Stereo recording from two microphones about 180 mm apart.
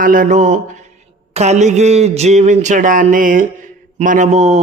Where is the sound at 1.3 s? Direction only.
40° right (ahead or behind).